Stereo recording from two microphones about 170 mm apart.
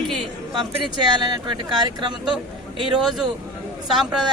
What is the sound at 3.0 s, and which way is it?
Speech, centre (ahead or behind).